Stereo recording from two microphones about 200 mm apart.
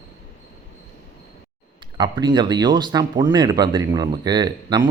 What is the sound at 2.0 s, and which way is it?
Speech, 20° right (ahead or behind).